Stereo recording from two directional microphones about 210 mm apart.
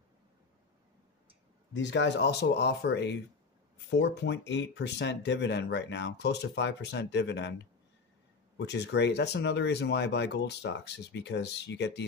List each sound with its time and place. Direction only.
1.7 s speech: 60° left (ahead or behind)
8.5 s speech: 55° left (ahead or behind)